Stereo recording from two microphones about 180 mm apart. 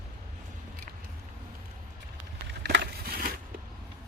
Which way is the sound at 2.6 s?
70° right (ahead or behind).